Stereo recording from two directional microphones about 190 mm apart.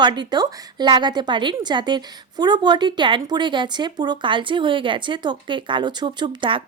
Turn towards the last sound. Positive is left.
turn(degrees=-25)  # may be behind; listen again after turning